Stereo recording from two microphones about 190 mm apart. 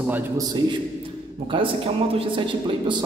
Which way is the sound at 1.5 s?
30° right (ahead or behind).